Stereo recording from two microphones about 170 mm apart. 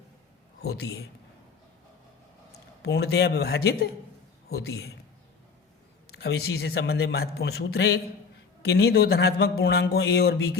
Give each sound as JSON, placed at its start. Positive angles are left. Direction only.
{"t": 0.6, "sound": "a man's voice", "side_deg": 70}
{"t": 2.8, "sound": "a man's voice", "side_deg": 75}
{"t": 6.1, "sound": "speech", "side_deg": 75}